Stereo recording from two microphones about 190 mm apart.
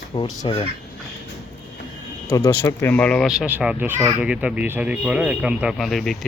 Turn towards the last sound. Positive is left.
turn(degrees=0)  # may be behind; listen again after turning